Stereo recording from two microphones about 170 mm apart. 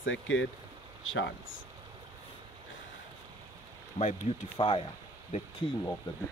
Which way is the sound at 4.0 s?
40° left (ahead or behind).